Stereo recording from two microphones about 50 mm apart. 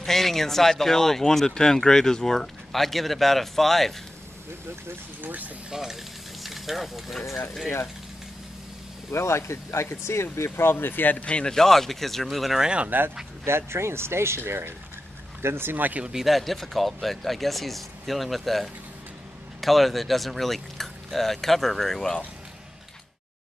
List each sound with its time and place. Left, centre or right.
0.0 s speech: centre
5.7 s speech: centre
9.1 s speech: left
11.2 s speech: left
11.5 s speech: centre
12.5 s speech: centre
13.5 s speech: right
14.4 s speech: right
16.1 s speech: centre